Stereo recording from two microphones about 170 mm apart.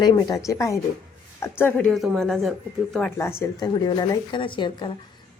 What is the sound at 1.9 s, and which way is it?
Speech, centre (ahead or behind).